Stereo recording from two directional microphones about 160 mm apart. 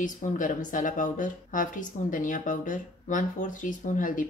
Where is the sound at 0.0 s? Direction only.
55° left (ahead or behind).